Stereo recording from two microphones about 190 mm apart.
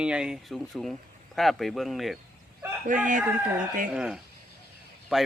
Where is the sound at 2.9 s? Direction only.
40° right (ahead or behind).